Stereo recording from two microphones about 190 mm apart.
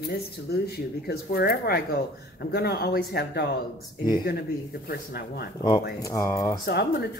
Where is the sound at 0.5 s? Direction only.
55° left (ahead or behind).